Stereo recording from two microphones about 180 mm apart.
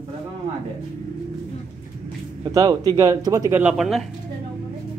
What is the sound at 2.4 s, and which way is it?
Speech, 20° right (ahead or behind).